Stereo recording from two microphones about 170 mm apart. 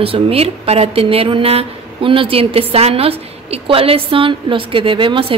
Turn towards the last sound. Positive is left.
turn(degrees=-30)  # may be behind; listen again after turning